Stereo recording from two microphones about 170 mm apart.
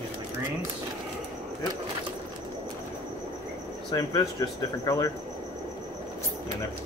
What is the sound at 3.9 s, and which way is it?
Speech, 20° left (ahead or behind).